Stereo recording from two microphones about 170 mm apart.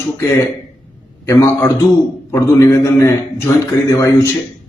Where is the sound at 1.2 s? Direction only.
15° left (ahead or behind).